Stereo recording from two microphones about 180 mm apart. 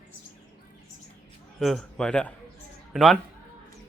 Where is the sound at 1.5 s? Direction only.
Centre (ahead or behind).